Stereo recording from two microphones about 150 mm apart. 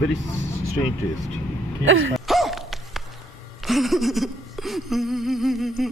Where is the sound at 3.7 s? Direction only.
Centre (ahead or behind).